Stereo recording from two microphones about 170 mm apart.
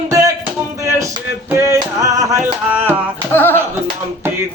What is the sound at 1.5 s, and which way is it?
Male singing, 15° right (ahead or behind).